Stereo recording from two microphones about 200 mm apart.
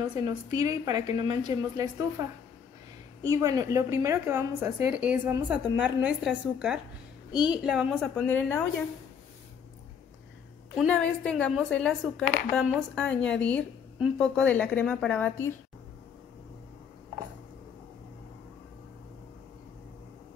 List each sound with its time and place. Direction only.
0.1 s a woman's voice: 20° right (ahead or behind); by 8.6 s 10° left (ahead or behind)
10.8 s speech: 5° left (ahead or behind)